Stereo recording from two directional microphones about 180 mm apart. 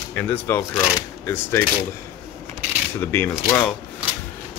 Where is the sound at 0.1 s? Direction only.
10° left (ahead or behind).